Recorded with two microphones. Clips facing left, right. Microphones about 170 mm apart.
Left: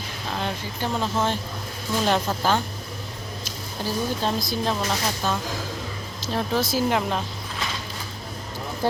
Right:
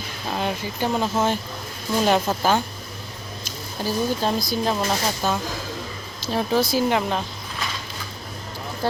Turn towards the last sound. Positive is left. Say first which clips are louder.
# right 2 dB
turn(degrees=0)  # may be behind; listen again after turning